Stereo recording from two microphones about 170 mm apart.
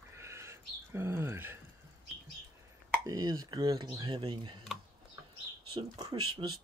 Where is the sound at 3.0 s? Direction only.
20° right (ahead or behind).